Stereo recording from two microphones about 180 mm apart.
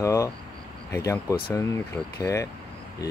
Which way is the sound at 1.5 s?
15° left (ahead or behind).